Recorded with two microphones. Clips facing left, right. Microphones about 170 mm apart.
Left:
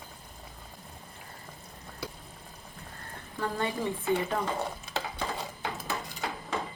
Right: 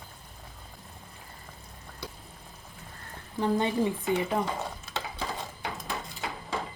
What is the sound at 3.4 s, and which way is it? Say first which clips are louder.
Speech: right 5 dB; 20° right (ahead or behind).